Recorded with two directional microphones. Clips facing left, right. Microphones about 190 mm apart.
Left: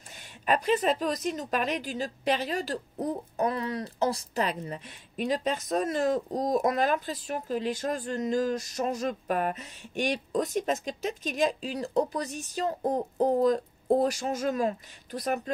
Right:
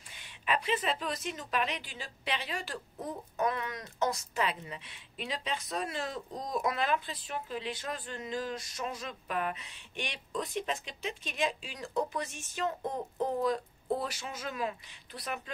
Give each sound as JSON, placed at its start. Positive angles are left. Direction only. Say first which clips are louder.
{"t": 0.1, "sound": "a woman's voice", "louder": "left 6 dB", "side_deg": 45}